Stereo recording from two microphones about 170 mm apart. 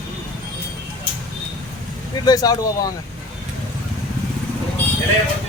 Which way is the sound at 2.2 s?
20° left (ahead or behind).